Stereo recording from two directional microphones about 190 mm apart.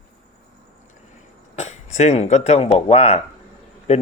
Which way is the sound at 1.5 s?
35° left (ahead or behind).